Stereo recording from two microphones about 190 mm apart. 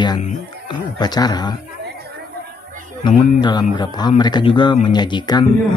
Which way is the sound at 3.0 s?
25° left (ahead or behind).